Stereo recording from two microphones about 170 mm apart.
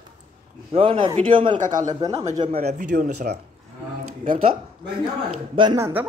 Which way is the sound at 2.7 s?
50° right (ahead or behind).